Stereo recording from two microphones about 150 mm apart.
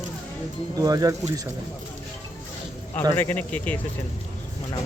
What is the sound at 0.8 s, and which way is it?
Speech, 25° right (ahead or behind).